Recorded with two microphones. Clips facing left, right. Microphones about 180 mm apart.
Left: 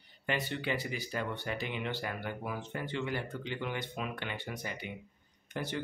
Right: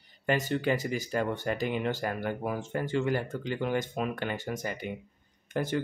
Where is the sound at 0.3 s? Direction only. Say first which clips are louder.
Right 7 dB; 45° right (ahead or behind).